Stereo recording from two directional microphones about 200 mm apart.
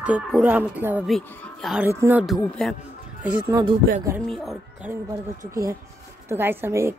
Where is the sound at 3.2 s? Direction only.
5° right (ahead or behind).